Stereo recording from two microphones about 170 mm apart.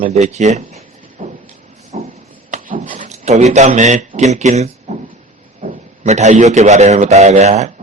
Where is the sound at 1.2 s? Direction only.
45° right (ahead or behind).